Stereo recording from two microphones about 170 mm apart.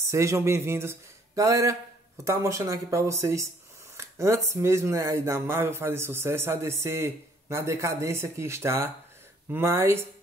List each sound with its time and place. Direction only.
0.0 s speech: 15° right (ahead or behind)